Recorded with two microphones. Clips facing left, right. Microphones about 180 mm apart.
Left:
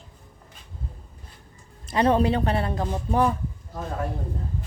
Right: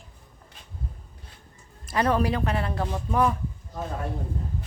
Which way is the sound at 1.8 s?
25° left (ahead or behind).